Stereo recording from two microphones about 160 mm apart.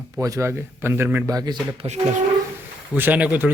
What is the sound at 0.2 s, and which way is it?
A man's voice, 20° right (ahead or behind).